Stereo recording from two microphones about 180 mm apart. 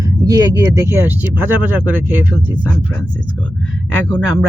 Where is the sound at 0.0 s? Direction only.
20° right (ahead or behind).